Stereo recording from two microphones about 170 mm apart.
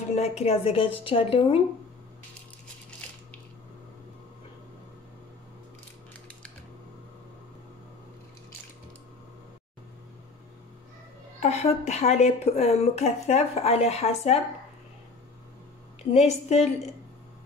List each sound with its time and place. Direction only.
0.4 s a woman's voice: 35° left (ahead or behind)
11.3 s a woman's voice: 40° left (ahead or behind)
16.1 s a woman's voice: 40° left (ahead or behind)